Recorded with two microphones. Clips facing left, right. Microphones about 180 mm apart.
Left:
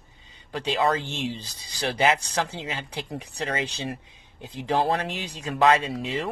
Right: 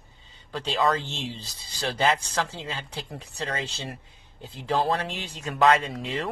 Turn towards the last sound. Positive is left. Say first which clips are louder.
# left 2 dB
turn(degrees=25)  # may be behind; listen again after turning